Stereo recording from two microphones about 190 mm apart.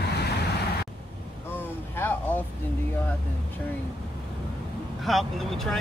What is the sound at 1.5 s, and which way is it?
Speech, 10° left (ahead or behind).